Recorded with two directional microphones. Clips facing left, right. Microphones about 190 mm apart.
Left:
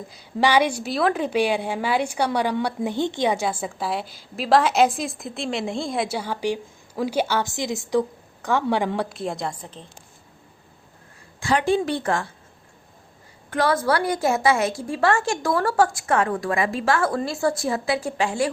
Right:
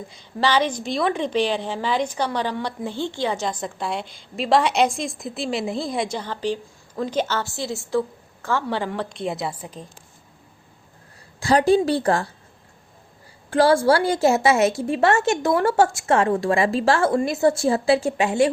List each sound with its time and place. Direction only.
0.3 s a woman's voice: 15° left (ahead or behind); by 9.8 s 10° right (ahead or behind)
11.3 s a woman's voice: 35° right (ahead or behind)
13.5 s a woman's voice: 30° right (ahead or behind)